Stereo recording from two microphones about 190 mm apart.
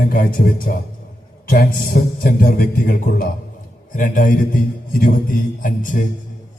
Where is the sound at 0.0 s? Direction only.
50° left (ahead or behind).